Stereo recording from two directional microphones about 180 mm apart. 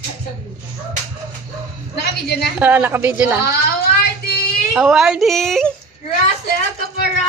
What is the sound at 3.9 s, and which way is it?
Child singing, 60° left (ahead or behind).